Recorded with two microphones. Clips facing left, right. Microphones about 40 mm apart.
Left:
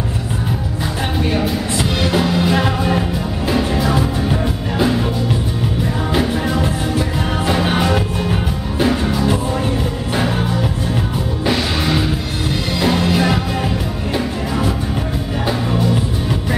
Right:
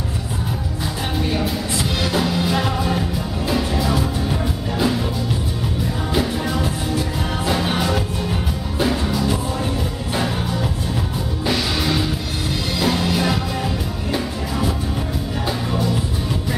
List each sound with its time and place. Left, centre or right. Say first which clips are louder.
1.2 s music: left 4 dB; left
6.1 s music: left 3 dB; centre
11.4 s music: left 2 dB; centre
15.4 s music: left 4 dB; centre